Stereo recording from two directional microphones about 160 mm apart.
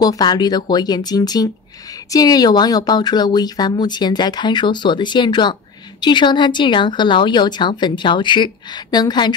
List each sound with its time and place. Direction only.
0.0 s speech: 25° left (ahead or behind)